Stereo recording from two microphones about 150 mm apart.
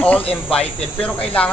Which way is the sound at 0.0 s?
10° left (ahead or behind).